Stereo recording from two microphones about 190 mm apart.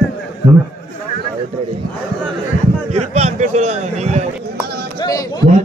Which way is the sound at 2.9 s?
35° right (ahead or behind).